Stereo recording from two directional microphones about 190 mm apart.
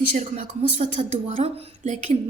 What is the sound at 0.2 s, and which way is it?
A woman's voice, 40° right (ahead or behind).